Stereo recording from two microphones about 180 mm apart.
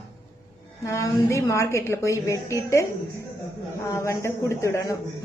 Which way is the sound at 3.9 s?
15° left (ahead or behind).